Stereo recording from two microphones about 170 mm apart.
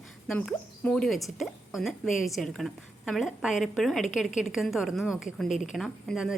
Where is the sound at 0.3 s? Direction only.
5° left (ahead or behind).